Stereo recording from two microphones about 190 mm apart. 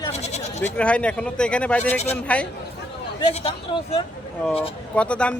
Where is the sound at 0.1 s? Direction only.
35° left (ahead or behind).